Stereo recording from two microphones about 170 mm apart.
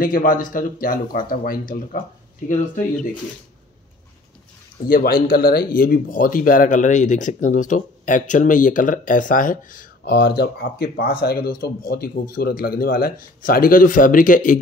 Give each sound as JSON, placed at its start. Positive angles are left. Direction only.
{"t": 0.0, "sound": "speech", "side_deg": 55}
{"t": 4.8, "sound": "speech", "side_deg": 60}